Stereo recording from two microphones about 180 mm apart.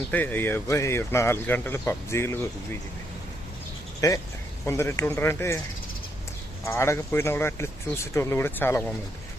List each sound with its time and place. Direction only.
0.1 s speech: 10° left (ahead or behind)
4.0 s speech: 20° left (ahead or behind)
6.7 s speech: 15° left (ahead or behind)